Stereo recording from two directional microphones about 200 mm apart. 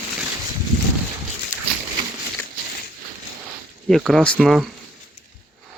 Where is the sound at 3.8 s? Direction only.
Centre (ahead or behind).